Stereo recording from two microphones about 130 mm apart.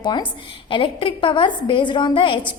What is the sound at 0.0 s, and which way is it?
A woman's voice, 35° left (ahead or behind).